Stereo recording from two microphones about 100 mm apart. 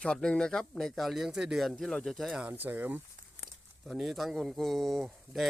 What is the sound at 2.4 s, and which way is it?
Speech, 20° right (ahead or behind).